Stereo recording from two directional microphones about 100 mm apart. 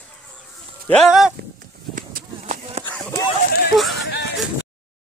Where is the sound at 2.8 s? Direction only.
90° right.